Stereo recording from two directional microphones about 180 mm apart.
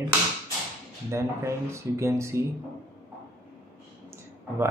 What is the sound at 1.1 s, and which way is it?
Speech, 15° right (ahead or behind).